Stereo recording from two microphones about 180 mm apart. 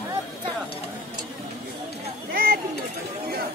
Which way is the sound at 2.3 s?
55° right (ahead or behind).